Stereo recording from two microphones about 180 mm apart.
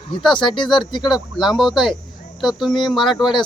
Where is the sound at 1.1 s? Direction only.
Centre (ahead or behind).